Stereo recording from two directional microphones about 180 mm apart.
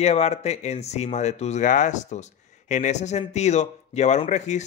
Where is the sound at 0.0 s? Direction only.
35° left (ahead or behind).